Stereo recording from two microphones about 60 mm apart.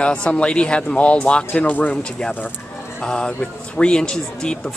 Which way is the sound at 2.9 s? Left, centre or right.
Centre.